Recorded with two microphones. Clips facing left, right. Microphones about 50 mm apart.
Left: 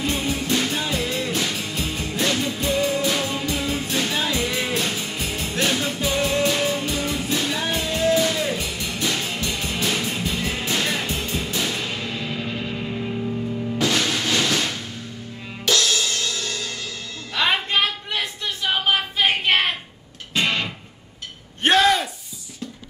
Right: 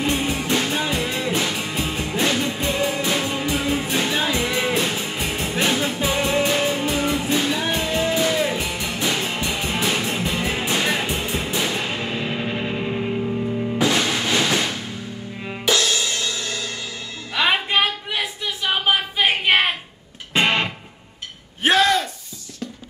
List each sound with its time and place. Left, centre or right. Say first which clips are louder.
0.3 s music: right 1 dB; right
13.7 s music: right 1 dB; centre
17.3 s a sound: right 2 dB; centre
20.3 s music: right 3 dB; right
21.6 s gasp: even; centre